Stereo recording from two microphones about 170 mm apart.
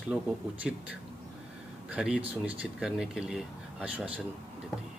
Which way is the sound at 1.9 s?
5° right (ahead or behind).